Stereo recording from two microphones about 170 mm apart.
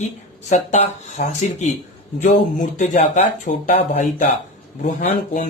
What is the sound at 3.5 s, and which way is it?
Speech, 60° left (ahead or behind).